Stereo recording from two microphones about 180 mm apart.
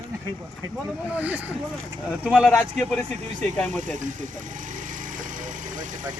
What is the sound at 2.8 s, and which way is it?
Speech, 5° left (ahead or behind).